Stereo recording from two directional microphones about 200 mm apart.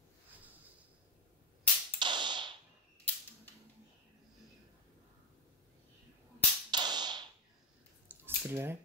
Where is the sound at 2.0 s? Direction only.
25° right (ahead or behind).